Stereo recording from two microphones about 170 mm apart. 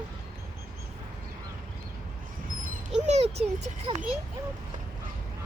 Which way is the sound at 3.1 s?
40° right (ahead or behind).